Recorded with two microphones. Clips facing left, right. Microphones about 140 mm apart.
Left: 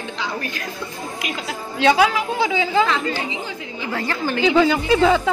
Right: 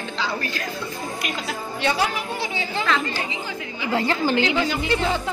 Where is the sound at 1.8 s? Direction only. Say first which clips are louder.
Left 8 dB; 90° left.